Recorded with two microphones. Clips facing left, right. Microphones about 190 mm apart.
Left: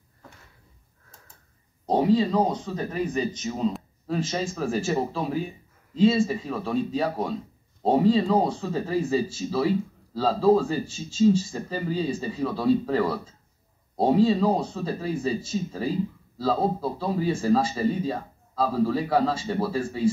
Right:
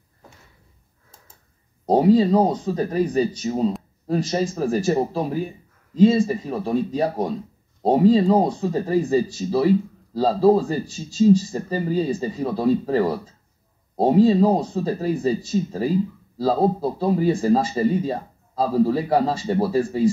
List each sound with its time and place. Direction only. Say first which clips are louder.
1.9 s a man's voice: right 5 dB; 40° right (ahead or behind)
6.6 s speech: right 3 dB; 15° right (ahead or behind)
7.8 s a man's voice: right 4 dB; 40° right (ahead or behind)